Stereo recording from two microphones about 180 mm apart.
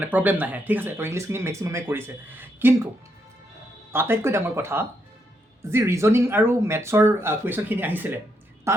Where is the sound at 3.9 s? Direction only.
15° right (ahead or behind).